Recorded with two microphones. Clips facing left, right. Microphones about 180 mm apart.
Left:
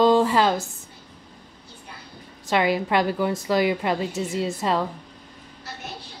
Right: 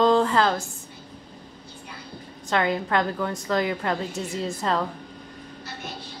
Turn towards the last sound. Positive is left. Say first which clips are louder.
# left 2 dB
turn(degrees=5)  # may be behind; listen again after turning